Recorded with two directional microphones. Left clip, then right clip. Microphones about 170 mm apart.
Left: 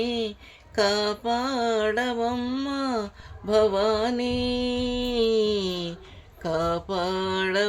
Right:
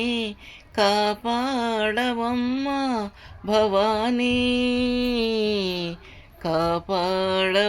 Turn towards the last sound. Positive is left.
turn(degrees=-15)  # may be behind; listen again after turning